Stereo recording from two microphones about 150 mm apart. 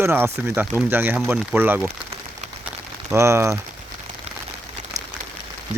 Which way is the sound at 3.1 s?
20° right (ahead or behind).